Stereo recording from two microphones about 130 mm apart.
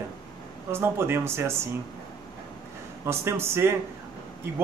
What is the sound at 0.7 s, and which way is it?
A man's voice, 20° right (ahead or behind).